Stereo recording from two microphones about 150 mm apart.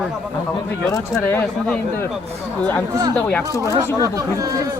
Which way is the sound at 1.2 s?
10° left (ahead or behind).